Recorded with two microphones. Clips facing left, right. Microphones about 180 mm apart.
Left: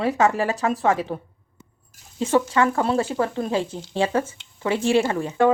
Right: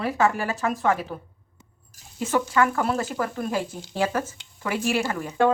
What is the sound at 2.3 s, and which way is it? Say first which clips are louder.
Speech: left 3 dB; 30° left (ahead or behind).